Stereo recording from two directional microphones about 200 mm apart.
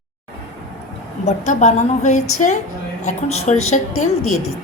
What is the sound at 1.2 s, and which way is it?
A woman's voice, 35° left (ahead or behind).